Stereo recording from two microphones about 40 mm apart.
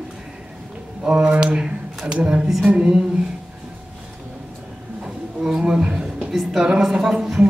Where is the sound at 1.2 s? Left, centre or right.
Right.